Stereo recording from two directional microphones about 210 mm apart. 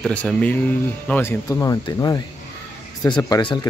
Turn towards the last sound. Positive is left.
turn(degrees=20)  # may be behind; listen again after turning